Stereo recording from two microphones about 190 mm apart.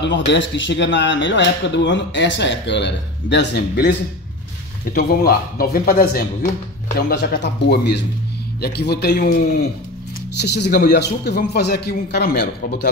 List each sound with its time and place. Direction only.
0.0 s speech: 70° left (ahead or behind)
4.9 s a man's voice: 55° left (ahead or behind)
10.4 s a man's voice: 60° left (ahead or behind)